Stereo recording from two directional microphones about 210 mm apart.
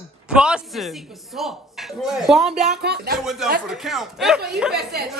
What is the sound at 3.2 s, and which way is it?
Speech, centre (ahead or behind).